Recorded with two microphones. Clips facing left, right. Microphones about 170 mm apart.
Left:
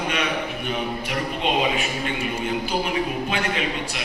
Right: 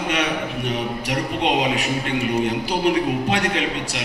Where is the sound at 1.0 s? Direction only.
90° right.